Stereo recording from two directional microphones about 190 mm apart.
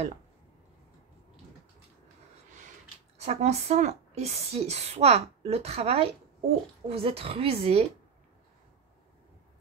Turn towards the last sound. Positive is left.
turn(degrees=-30)  # may be behind; listen again after turning